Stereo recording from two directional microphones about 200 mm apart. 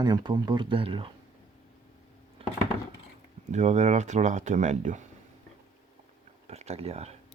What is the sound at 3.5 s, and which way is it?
Speech, 35° right (ahead or behind).